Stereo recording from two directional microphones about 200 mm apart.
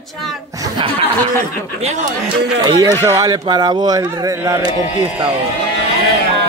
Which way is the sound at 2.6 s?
20° right (ahead or behind).